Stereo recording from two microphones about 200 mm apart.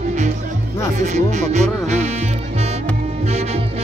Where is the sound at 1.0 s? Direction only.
35° right (ahead or behind).